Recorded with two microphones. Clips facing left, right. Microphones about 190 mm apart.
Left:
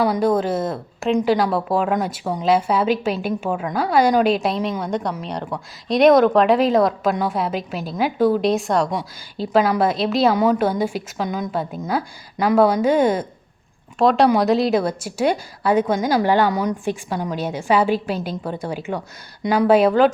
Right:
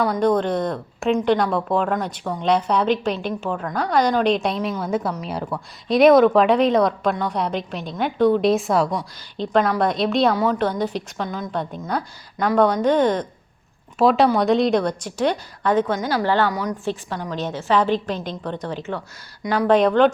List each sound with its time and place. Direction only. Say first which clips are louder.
0.0 s a woman's voice: left 1 dB; 5° left (ahead or behind)
14.0 s a woman's voice: left 1 dB; centre (ahead or behind)
16.5 s a woman's voice: left 4 dB; 25° left (ahead or behind)
16.8 s a woman's voice: left 3 dB; 10° left (ahead or behind)